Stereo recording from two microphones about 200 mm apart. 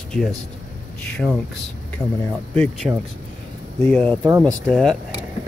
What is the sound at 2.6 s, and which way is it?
Speech, centre (ahead or behind).